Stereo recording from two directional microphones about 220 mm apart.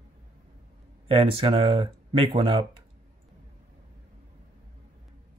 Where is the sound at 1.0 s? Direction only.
25° right (ahead or behind).